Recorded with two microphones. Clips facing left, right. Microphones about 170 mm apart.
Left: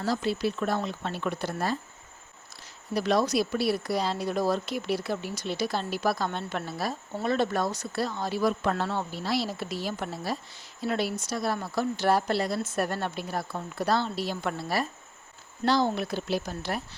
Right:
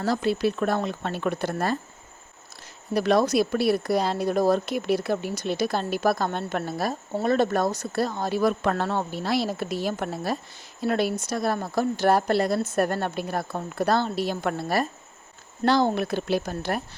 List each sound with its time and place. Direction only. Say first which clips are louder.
0.0 s speech: right 4 dB; 55° right (ahead or behind)
2.9 s speech: right 4 dB; 55° right (ahead or behind)